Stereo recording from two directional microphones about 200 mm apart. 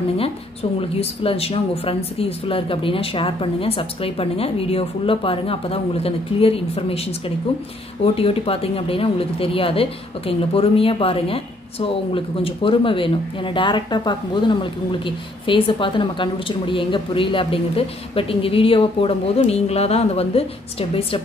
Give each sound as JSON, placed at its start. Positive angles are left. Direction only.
{"t": 0.2, "sound": "a woman's voice", "side_deg": 30}